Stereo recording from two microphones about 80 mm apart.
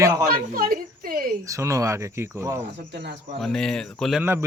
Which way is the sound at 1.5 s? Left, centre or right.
Right.